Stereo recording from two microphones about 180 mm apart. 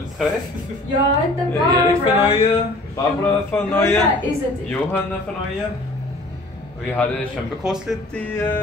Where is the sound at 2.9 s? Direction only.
10° left (ahead or behind).